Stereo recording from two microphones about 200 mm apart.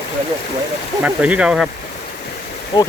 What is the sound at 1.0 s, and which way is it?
Speech, 5° right (ahead or behind).